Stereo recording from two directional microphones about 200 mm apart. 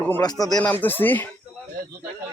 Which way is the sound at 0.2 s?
20° left (ahead or behind).